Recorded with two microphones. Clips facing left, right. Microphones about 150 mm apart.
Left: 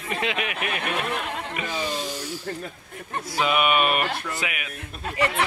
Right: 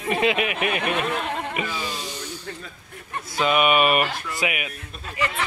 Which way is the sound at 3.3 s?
Centre (ahead or behind).